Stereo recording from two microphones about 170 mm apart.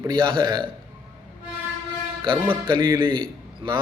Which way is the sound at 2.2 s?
30° right (ahead or behind).